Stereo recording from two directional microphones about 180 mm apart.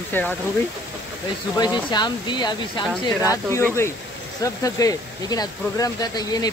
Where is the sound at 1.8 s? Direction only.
25° left (ahead or behind).